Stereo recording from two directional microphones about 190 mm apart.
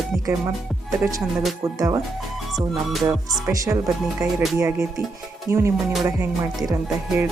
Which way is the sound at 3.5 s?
15° right (ahead or behind).